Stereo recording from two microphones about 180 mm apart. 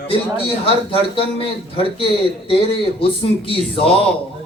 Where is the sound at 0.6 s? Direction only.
30° left (ahead or behind).